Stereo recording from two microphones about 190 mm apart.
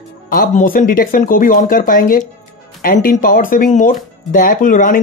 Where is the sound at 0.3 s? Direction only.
45° left (ahead or behind).